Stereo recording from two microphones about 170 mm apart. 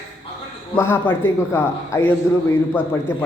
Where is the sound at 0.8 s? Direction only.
15° left (ahead or behind).